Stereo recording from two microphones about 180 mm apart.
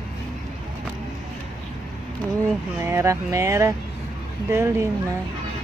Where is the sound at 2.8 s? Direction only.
15° right (ahead or behind).